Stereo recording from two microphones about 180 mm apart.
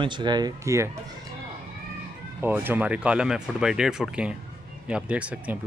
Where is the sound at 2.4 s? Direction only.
10° right (ahead or behind).